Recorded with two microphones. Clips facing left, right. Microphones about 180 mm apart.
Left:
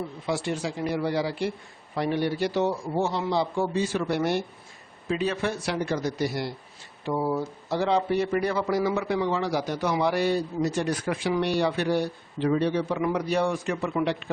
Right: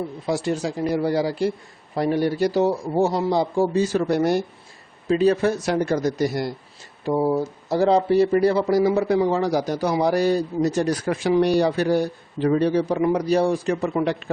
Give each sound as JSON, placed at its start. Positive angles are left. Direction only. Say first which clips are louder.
{"t": 0.3, "sound": "speech", "louder": "right 5 dB", "side_deg": -40}
{"t": 7.1, "sound": "speech", "louder": "right 6 dB", "side_deg": -30}